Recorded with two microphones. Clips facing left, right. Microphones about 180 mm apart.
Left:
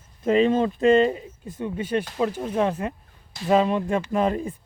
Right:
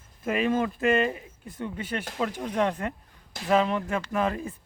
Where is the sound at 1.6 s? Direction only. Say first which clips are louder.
Left 7 dB; 10° left (ahead or behind).